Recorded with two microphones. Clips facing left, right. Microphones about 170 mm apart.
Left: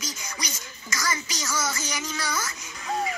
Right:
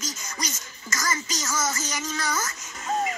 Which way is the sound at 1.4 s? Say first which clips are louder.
Even; 40° right (ahead or behind).